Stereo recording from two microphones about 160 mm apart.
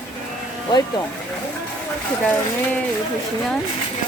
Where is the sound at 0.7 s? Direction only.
25° left (ahead or behind).